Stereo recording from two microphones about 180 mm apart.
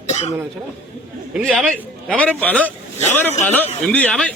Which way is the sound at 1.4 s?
Centre (ahead or behind).